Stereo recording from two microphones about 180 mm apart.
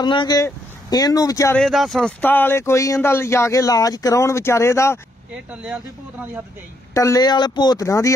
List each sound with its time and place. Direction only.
0.0 s speech: 25° left (ahead or behind)
1.6 s speech: centre (ahead or behind)
5.5 s speech: 5° right (ahead or behind)
6.9 s speech: 15° left (ahead or behind)